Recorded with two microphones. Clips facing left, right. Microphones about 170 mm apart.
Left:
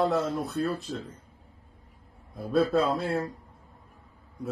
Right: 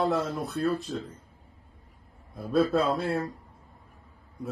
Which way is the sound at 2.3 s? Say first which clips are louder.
Even; centre (ahead or behind).